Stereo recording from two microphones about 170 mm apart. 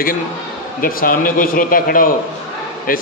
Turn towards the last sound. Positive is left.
turn(degrees=55)  # may be behind; listen again after turning